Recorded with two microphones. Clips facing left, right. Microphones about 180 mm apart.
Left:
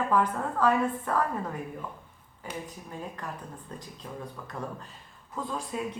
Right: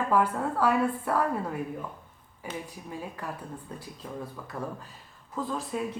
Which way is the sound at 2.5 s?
10° right (ahead or behind).